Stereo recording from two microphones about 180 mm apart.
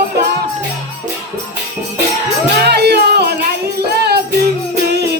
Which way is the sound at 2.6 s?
65° right (ahead or behind).